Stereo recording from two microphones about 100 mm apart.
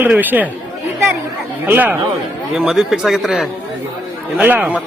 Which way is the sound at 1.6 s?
20° right (ahead or behind).